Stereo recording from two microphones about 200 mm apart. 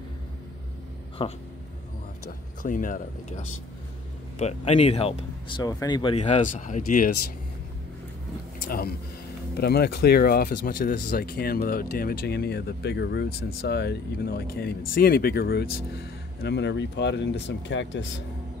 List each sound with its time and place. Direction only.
1.2 s speech: 25° left (ahead or behind)
2.6 s speech: 40° left (ahead or behind); by 6.1 s 20° left (ahead or behind)
6.1 s speech: 35° left (ahead or behind)
8.6 s speech: 45° left (ahead or behind); by 18.0 s 65° left (ahead or behind)